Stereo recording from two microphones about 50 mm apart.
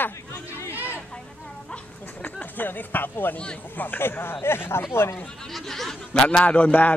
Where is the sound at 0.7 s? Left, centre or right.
Right.